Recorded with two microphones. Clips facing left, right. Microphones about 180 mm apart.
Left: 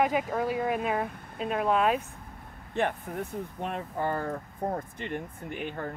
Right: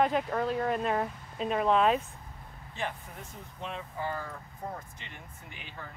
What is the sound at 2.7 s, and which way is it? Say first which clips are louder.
Speech: left 8 dB; 60° left (ahead or behind).